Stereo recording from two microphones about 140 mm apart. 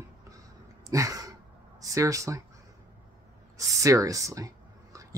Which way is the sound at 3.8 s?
25° right (ahead or behind).